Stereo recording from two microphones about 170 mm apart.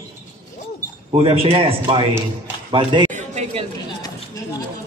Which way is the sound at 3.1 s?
40° right (ahead or behind).